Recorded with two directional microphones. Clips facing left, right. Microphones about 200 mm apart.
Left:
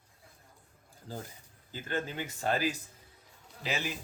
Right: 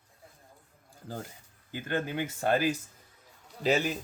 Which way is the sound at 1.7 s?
60° right (ahead or behind).